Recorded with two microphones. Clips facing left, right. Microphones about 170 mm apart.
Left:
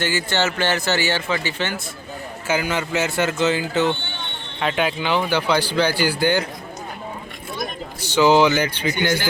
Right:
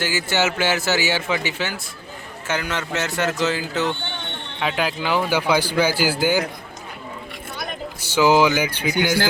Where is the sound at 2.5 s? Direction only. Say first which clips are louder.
Left 3 dB; 5° left (ahead or behind).